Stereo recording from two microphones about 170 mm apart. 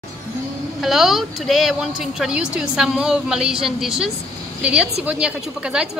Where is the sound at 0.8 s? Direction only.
Centre (ahead or behind).